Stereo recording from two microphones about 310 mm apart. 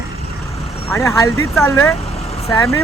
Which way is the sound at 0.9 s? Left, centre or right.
Centre.